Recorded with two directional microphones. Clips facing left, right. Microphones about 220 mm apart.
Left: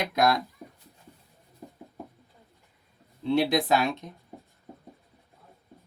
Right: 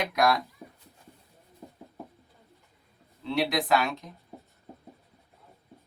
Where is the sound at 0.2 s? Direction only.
25° left (ahead or behind).